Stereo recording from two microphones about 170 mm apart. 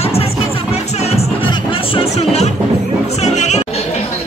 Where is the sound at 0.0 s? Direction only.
35° left (ahead or behind).